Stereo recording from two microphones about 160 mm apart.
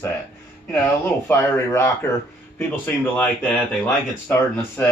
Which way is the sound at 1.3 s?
15° left (ahead or behind).